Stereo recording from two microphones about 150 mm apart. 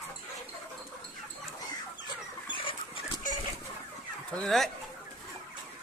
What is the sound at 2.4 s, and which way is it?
Chicken, 35° left (ahead or behind).